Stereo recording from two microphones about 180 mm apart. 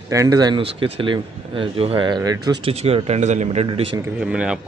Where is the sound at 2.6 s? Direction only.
35° right (ahead or behind).